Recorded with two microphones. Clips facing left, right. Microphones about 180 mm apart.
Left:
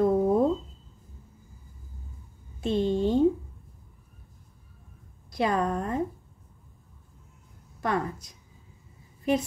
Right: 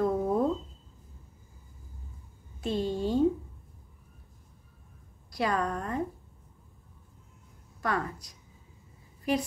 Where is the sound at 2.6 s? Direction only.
25° left (ahead or behind).